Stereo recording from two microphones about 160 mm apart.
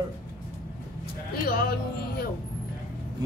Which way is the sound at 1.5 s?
70° left (ahead or behind).